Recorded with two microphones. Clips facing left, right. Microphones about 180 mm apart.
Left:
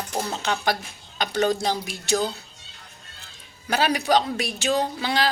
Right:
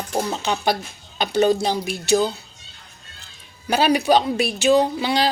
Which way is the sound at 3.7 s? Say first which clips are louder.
Right 4 dB; 20° right (ahead or behind).